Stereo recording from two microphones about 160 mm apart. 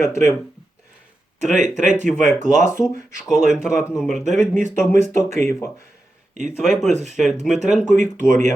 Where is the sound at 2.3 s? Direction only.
50° right (ahead or behind).